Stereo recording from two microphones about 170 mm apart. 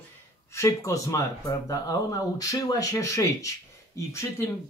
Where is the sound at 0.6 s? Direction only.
20° left (ahead or behind).